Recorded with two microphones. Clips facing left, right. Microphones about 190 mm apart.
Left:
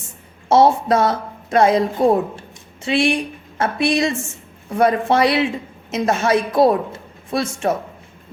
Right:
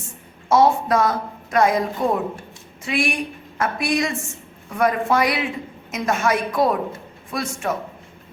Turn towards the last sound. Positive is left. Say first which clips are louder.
# left 5 dB
turn(degrees=30)  # may be behind; listen again after turning